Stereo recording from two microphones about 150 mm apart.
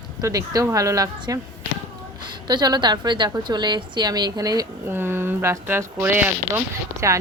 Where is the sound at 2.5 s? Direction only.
30° right (ahead or behind).